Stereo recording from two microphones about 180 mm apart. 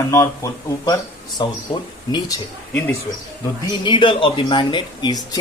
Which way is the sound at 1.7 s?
35° left (ahead or behind).